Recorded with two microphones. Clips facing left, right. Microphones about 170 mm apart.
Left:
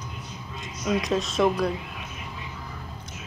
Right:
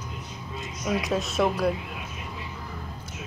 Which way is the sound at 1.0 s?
5° right (ahead or behind).